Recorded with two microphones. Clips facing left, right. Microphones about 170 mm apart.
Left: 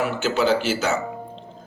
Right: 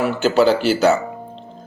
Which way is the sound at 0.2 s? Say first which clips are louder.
Right 7 dB; 35° right (ahead or behind).